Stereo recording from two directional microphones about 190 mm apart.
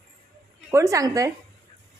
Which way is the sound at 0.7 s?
15° right (ahead or behind).